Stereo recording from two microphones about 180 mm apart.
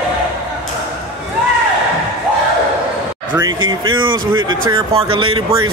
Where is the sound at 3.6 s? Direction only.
90° right.